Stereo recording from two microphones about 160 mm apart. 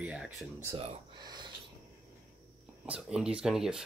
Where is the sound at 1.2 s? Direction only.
25° right (ahead or behind).